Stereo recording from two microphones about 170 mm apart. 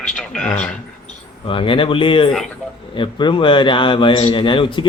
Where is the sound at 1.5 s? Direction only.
30° left (ahead or behind).